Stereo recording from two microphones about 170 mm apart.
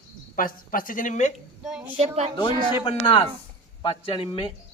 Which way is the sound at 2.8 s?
30° left (ahead or behind).